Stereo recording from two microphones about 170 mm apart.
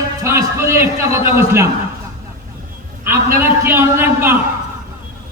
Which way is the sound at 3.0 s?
15° right (ahead or behind).